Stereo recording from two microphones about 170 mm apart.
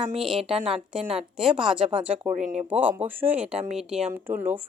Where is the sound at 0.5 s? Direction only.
35° right (ahead or behind).